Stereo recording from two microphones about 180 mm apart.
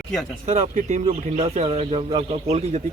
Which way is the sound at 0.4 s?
40° right (ahead or behind).